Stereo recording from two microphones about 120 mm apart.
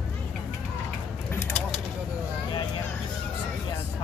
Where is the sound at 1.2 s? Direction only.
20° left (ahead or behind).